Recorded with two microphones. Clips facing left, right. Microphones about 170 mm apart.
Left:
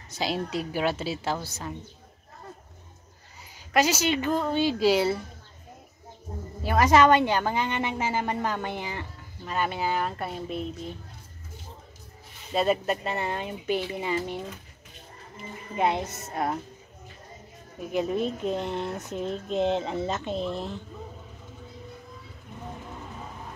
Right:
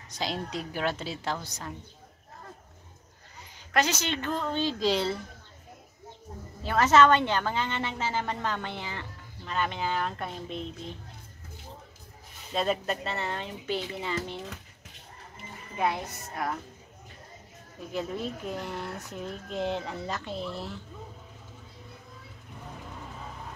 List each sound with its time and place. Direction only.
0.1 s a woman's voice: 5° left (ahead or behind)
3.7 s a woman's voice: 10° left (ahead or behind)
6.6 s a woman's voice: 10° left (ahead or behind)
12.5 s a woman's voice: 10° left (ahead or behind)
15.7 s speech: 20° left (ahead or behind)
17.7 s speech: 20° left (ahead or behind)